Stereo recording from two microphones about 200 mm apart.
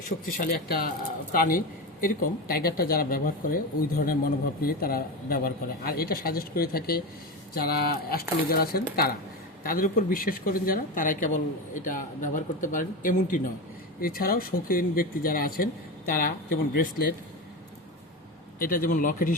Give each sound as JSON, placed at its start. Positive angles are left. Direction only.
{"t": 0.3, "sound": "speech", "side_deg": 45}
{"t": 4.6, "sound": "speech", "side_deg": 50}
{"t": 18.6, "sound": "speech", "side_deg": 45}